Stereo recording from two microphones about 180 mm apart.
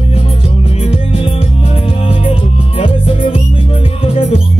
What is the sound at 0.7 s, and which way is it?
Music, 30° left (ahead or behind).